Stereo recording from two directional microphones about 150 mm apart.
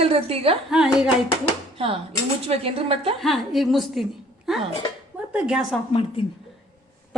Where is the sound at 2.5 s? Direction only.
40° right (ahead or behind).